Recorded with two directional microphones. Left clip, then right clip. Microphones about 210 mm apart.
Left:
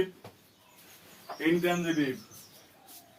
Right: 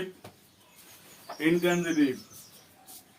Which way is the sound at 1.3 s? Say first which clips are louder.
Right 1 dB; 20° right (ahead or behind).